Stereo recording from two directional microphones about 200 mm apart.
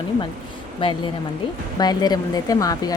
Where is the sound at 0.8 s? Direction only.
25° left (ahead or behind).